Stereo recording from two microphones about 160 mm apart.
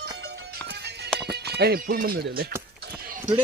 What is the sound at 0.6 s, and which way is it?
Music, 90° right.